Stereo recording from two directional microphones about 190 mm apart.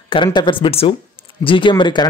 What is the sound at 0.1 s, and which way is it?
Speech, 25° left (ahead or behind).